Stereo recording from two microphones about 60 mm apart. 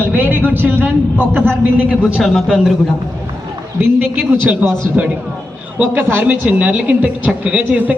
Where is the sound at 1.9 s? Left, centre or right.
Right.